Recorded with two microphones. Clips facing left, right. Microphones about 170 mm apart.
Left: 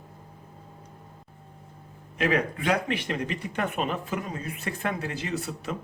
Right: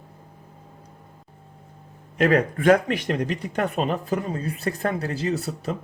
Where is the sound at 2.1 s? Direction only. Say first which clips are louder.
Right 6 dB; 45° right (ahead or behind).